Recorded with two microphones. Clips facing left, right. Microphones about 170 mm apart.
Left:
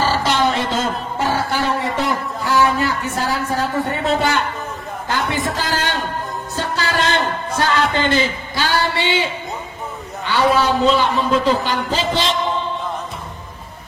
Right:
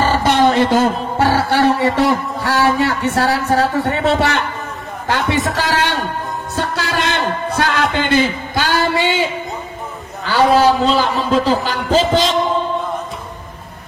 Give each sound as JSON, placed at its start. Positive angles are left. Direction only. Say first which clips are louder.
{"t": 0.0, "sound": "a sound", "louder": "right 4 dB", "side_deg": -55}
{"t": 5.0, "sound": "a man's voice", "louder": "right 4 dB", "side_deg": -75}
{"t": 6.5, "sound": "music", "louder": "right 1 dB", "side_deg": -65}
{"t": 7.5, "sound": "a man's voice", "louder": "even", "side_deg": -60}